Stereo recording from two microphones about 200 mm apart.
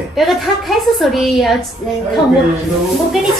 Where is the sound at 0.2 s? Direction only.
Centre (ahead or behind).